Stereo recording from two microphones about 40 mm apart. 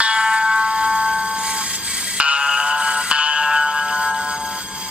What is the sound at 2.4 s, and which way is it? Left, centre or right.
Music, centre.